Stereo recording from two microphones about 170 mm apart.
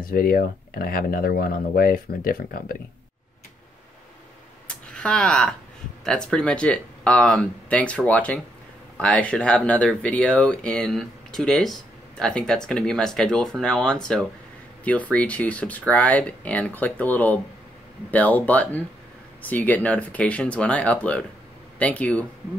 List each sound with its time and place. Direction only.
0.0 s speech: 60° left (ahead or behind)
4.6 s a sound: 5° left (ahead or behind)
6.0 s speech: 5° left (ahead or behind)